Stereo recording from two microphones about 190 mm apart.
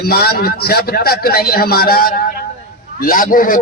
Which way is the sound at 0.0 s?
55° left (ahead or behind).